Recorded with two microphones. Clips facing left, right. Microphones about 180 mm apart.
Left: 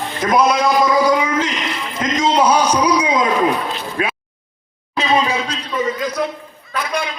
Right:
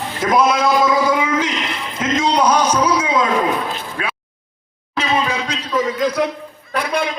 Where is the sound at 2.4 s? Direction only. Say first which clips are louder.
Left 1 dB; 10° left (ahead or behind).